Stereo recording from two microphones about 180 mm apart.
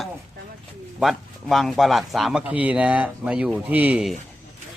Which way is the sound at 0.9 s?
Centre (ahead or behind).